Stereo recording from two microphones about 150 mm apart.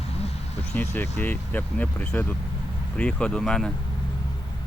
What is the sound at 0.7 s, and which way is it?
Speech, 15° left (ahead or behind).